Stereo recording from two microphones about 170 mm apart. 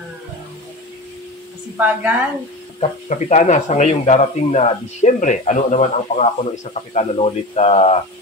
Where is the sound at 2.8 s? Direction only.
45° left (ahead or behind).